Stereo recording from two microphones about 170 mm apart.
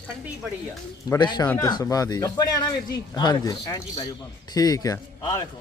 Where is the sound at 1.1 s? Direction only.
25° left (ahead or behind).